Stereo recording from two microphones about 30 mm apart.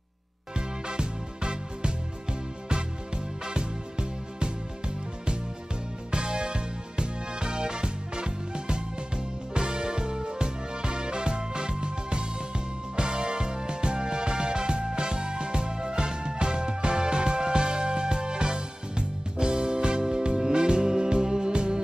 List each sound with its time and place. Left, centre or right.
0.6 s music: right
3.4 s music: right